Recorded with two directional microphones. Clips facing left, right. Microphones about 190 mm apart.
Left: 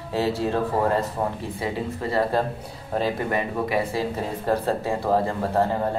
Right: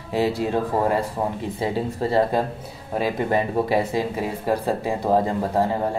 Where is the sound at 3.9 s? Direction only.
15° right (ahead or behind).